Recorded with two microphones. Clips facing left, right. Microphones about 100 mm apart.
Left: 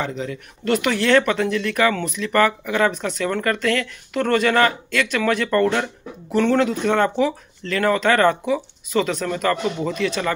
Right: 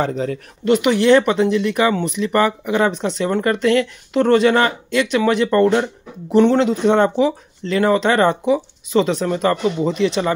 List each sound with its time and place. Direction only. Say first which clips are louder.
0.0 s speech: right 6 dB; 40° right (ahead or behind)
0.7 s speech: right 5 dB; 20° right (ahead or behind)